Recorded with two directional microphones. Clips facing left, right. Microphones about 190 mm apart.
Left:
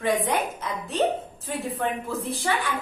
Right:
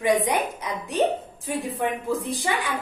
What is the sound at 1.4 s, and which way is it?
A woman's voice, 15° right (ahead or behind).